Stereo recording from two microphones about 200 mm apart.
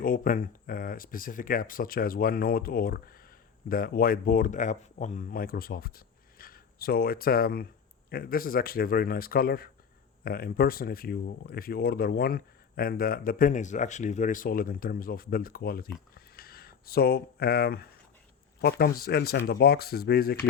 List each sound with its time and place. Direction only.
0.0 s speech: 45° left (ahead or behind)
16.1 s a sound: 50° left (ahead or behind)
18.6 s speech: 50° left (ahead or behind)